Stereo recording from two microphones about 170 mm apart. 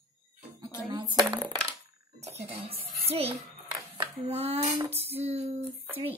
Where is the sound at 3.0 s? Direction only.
35° right (ahead or behind).